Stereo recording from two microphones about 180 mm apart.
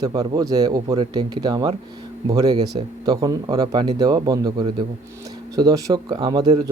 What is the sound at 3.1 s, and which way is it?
Speech, 20° right (ahead or behind).